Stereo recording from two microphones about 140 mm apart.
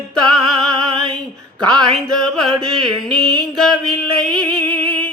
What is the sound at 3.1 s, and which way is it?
Music, 30° right (ahead or behind).